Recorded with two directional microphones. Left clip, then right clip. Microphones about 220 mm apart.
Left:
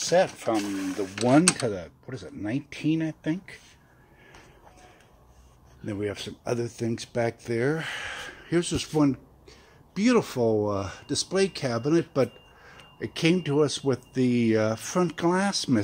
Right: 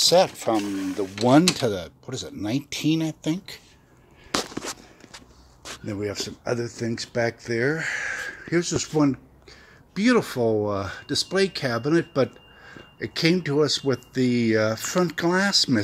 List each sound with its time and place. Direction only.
0.1 s speech: 15° right (ahead or behind)
0.7 s speech: 5° right (ahead or behind)
1.6 s speech: 15° right (ahead or behind)
5.9 s speech: centre (ahead or behind)